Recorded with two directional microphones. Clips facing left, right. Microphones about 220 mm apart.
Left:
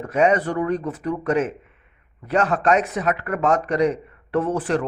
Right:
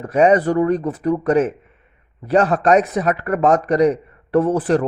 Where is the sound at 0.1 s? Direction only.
35° right (ahead or behind).